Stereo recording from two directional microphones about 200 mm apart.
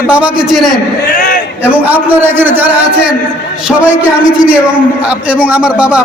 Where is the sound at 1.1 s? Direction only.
45° left (ahead or behind).